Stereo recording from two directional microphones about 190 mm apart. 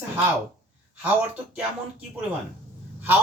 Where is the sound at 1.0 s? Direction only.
10° right (ahead or behind).